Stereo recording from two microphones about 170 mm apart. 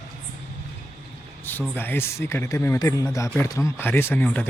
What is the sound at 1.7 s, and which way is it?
Speech, 10° left (ahead or behind).